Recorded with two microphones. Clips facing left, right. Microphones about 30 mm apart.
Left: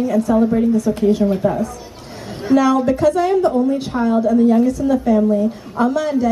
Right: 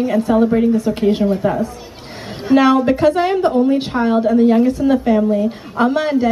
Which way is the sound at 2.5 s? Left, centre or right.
Right.